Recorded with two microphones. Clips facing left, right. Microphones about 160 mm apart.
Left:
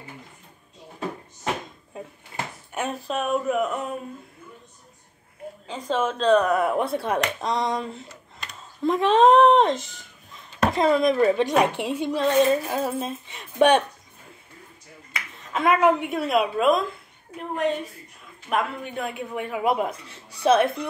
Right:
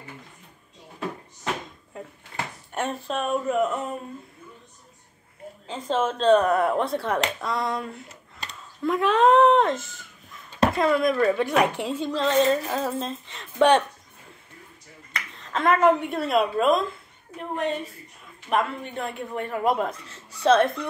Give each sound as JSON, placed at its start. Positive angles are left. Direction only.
{"t": 2.7, "sound": "a man's voice", "side_deg": 0}
{"t": 5.7, "sound": "a man's voice", "side_deg": 0}
{"t": 15.1, "sound": "a man's voice", "side_deg": 10}